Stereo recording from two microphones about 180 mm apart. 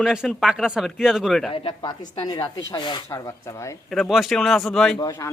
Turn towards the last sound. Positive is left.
turn(degrees=20)  # may be behind; listen again after turning